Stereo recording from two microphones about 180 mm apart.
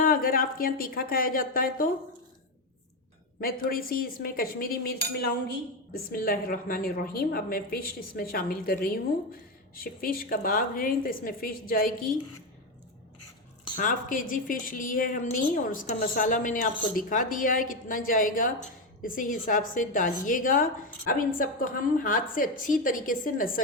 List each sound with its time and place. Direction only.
0.0 s a woman's voice: 50° left (ahead or behind)
3.4 s a woman's voice: 55° left (ahead or behind)
13.7 s a woman's voice: 50° left (ahead or behind)